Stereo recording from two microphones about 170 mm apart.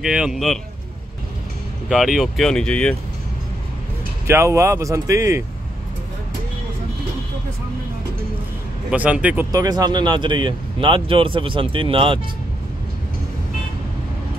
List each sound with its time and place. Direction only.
0.0 s speech: 5° right (ahead or behind)
1.9 s speech: centre (ahead or behind)
4.3 s speech: 15° right (ahead or behind)
8.9 s speech: 10° right (ahead or behind)
9.5 s speech: 20° right (ahead or behind)